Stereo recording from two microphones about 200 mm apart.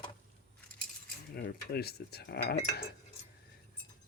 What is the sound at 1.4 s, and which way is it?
Speech, 55° left (ahead or behind).